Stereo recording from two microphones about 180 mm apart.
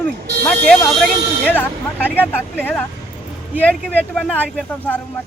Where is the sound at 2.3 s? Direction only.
10° left (ahead or behind).